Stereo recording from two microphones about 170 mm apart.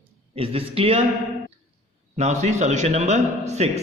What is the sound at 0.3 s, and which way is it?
Speech, 35° right (ahead or behind).